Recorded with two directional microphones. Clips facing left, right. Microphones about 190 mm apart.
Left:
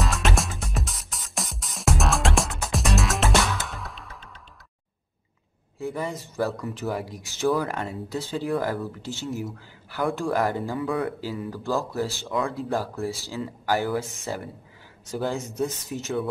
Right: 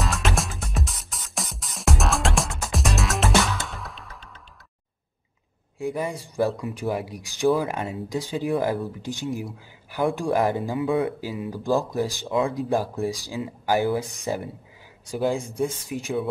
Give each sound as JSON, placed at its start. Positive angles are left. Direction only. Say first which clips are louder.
{"t": 0.0, "sound": "music", "louder": "even", "side_deg": 0}
{"t": 5.8, "sound": "speech", "louder": "right 2 dB", "side_deg": -15}